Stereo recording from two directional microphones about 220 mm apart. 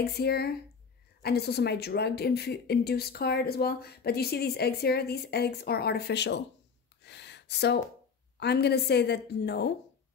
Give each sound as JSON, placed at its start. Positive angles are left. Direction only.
{"t": 0.2, "sound": "a woman's voice", "side_deg": 45}
{"t": 7.0, "sound": "a sound", "side_deg": 50}
{"t": 8.4, "sound": "a woman's voice", "side_deg": 50}